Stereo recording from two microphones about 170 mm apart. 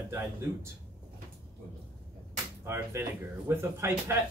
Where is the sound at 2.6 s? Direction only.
15° right (ahead or behind).